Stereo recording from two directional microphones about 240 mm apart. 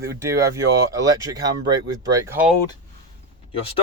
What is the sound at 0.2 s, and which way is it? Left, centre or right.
Speech, centre.